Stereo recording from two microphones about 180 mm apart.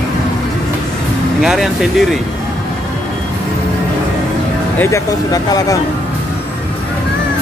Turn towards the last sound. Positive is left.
turn(degrees=20)  # may be behind; listen again after turning